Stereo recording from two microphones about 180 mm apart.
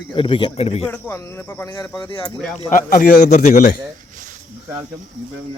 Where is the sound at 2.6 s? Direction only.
50° left (ahead or behind).